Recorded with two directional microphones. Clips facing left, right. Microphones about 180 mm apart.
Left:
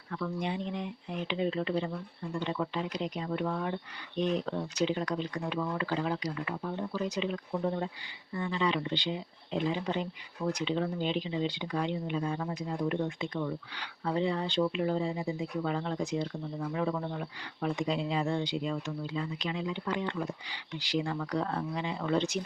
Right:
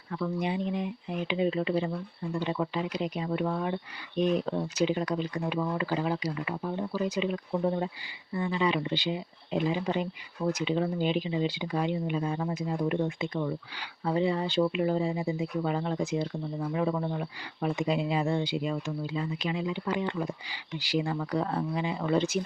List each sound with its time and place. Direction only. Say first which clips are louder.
0.1 s speech: right 3 dB; 15° right (ahead or behind)
13.1 s speech: right 3 dB; 5° right (ahead or behind)
18.4 s speech: right 2 dB; 5° right (ahead or behind)